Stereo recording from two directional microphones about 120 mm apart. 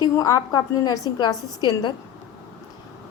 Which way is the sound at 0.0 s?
30° left (ahead or behind).